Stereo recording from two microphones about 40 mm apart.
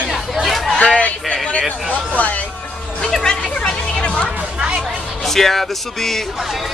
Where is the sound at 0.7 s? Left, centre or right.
Left.